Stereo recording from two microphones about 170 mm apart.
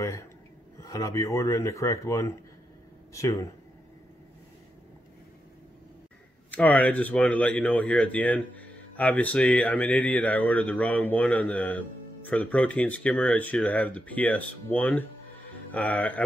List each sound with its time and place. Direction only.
0.0 s speech: 20° left (ahead or behind)
6.5 s speech: 10° left (ahead or behind)